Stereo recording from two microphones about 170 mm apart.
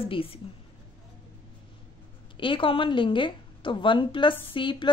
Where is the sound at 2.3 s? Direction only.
30° left (ahead or behind).